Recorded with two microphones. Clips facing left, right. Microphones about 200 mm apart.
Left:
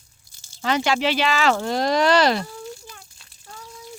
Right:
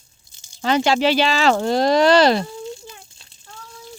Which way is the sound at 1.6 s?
30° right (ahead or behind).